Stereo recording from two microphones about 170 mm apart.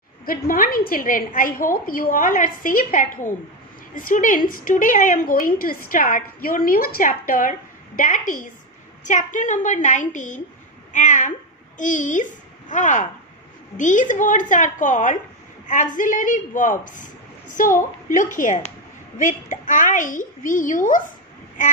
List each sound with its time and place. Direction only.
0.2 s a woman's voice: 60° left (ahead or behind)